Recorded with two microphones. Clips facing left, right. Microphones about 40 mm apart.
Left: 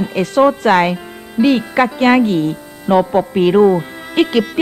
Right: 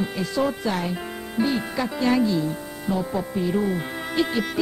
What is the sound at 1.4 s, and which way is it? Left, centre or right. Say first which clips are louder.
Speech: left 11 dB; centre.